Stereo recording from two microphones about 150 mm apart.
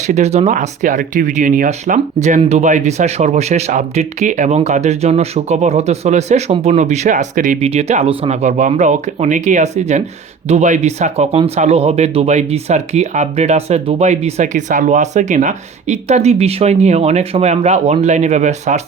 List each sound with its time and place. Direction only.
0.1 s speech: 50° right (ahead or behind)
7.6 s speech: 45° right (ahead or behind)